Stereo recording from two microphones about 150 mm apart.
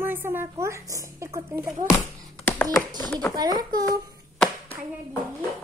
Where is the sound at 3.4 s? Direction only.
25° right (ahead or behind).